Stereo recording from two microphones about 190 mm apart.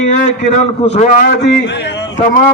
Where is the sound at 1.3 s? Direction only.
65° left (ahead or behind).